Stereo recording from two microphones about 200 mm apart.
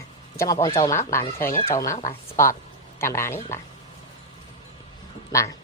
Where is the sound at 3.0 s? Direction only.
15° left (ahead or behind).